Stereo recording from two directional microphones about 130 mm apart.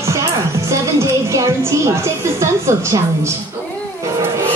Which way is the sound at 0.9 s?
20° right (ahead or behind).